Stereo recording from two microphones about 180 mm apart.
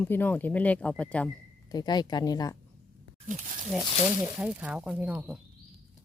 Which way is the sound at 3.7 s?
5° right (ahead or behind).